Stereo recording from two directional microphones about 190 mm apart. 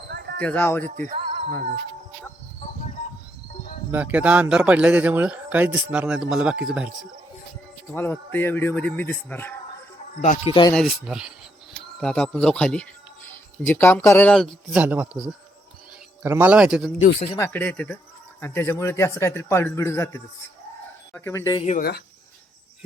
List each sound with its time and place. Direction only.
0.1 s wind chime: 60° right (ahead or behind)
0.3 s a man's voice: 10° left (ahead or behind)
0.9 s music: 40° right (ahead or behind)
3.9 s a man's voice: 10° right (ahead or behind)
7.9 s a man's voice: 10° left (ahead or behind)
10.2 s speech: 40° left (ahead or behind)
10.8 s speech: centre (ahead or behind)
14.8 s a man's voice: 10° right (ahead or behind)
17.3 s a man's voice: 10° left (ahead or behind)
21.8 s speech: 55° left (ahead or behind)